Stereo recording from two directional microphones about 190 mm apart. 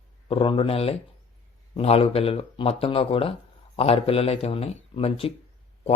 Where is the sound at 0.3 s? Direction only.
30° left (ahead or behind).